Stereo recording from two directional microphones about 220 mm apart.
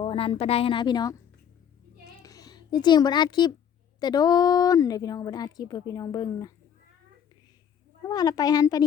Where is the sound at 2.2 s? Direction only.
15° left (ahead or behind).